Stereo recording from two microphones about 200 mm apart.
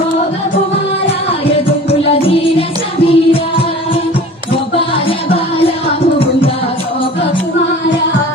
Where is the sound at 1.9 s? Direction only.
30° left (ahead or behind).